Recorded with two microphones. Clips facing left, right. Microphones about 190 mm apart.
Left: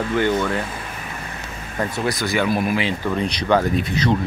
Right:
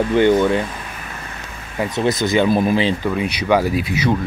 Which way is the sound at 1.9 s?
20° right (ahead or behind).